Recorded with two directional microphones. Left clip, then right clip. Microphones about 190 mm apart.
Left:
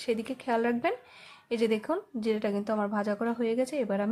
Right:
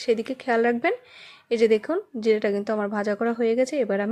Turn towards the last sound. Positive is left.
turn(degrees=-20)  # may be behind; listen again after turning